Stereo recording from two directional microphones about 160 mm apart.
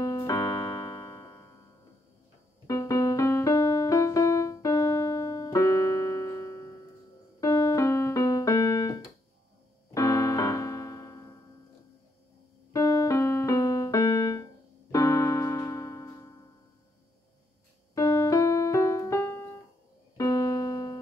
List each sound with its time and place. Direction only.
0.0 s keyboard: 20° left (ahead or behind)
2.6 s music: 20° left (ahead or behind)
7.3 s keyboard: 20° left (ahead or behind)
12.7 s music: 20° left (ahead or behind)
14.9 s keyboard: 20° left (ahead or behind)
17.9 s keyboard: 20° left (ahead or behind)